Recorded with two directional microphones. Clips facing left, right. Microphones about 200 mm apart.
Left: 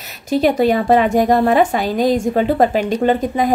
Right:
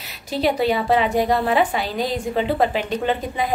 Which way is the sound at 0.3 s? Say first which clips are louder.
Left 6 dB; 45° left (ahead or behind).